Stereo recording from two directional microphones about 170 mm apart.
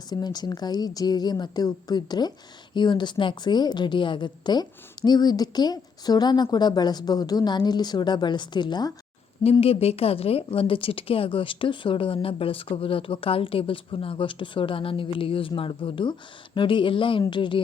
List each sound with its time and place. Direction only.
0.1 s a woman's voice: 25° left (ahead or behind)